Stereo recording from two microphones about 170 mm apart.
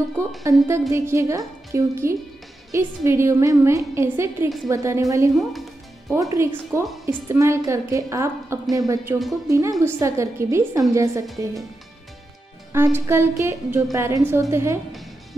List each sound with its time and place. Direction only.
0.4 s a woman's voice: 20° right (ahead or behind)
12.7 s a woman's voice: 15° right (ahead or behind)